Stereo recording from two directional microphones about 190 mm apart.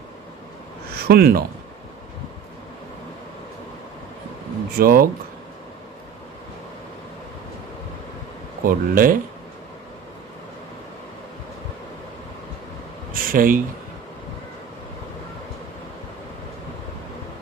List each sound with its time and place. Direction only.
0.9 s speech: 55° right (ahead or behind)
4.7 s speech: 50° right (ahead or behind)
8.6 s speech: 45° right (ahead or behind)
13.1 s a sound: 50° right (ahead or behind)